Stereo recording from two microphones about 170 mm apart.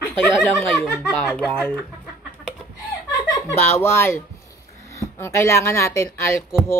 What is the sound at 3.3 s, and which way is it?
Speech, 15° left (ahead or behind).